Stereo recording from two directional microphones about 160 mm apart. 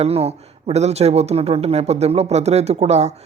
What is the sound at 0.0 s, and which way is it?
Speech, 40° right (ahead or behind).